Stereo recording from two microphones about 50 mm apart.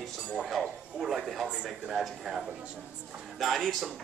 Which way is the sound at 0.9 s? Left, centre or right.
Centre.